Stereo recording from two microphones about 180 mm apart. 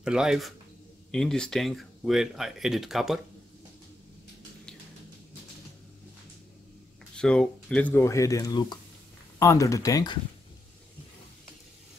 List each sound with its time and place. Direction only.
0.0 s speech: 5° right (ahead or behind)
7.2 s speech: 5° left (ahead or behind)